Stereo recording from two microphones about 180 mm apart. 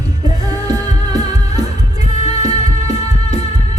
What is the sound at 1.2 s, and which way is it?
Music, 35° left (ahead or behind).